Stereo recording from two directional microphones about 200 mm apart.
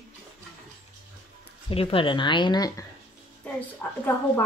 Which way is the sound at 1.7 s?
25° left (ahead or behind).